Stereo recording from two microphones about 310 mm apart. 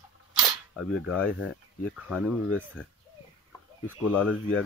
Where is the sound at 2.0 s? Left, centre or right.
Centre.